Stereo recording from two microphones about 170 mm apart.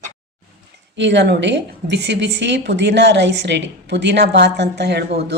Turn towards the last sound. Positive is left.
turn(degrees=-80)